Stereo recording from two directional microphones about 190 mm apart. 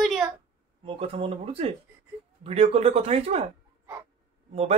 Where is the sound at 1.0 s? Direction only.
30° right (ahead or behind).